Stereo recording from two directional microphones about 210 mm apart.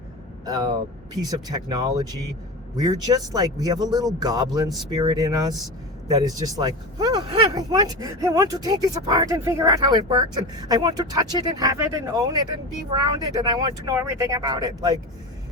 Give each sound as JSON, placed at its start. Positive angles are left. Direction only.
{"t": 0.4, "sound": "speech", "side_deg": -20}